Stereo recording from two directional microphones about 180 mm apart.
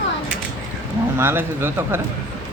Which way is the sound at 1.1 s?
10° right (ahead or behind).